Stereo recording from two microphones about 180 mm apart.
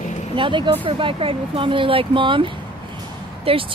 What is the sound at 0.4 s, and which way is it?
A woman's voice, 25° right (ahead or behind).